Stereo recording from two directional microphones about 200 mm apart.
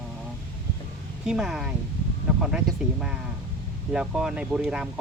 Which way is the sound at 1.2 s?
Centre (ahead or behind).